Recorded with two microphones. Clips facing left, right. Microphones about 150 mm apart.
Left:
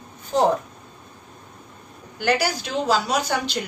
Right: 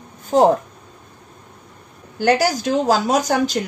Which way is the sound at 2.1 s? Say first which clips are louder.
Right 5 dB; 40° right (ahead or behind).